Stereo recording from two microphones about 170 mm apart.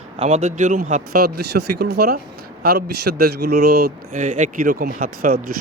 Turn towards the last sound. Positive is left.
turn(degrees=-55)  # may be behind; listen again after turning